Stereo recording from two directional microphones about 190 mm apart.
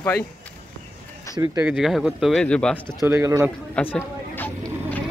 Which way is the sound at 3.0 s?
15° right (ahead or behind).